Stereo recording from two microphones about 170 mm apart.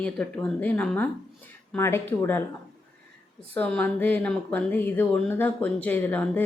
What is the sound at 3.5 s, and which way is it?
A woman's voice, 10° left (ahead or behind).